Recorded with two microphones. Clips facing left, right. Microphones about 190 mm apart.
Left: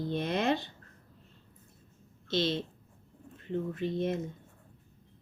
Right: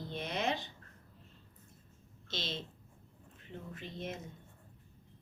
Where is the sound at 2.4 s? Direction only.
60° left (ahead or behind).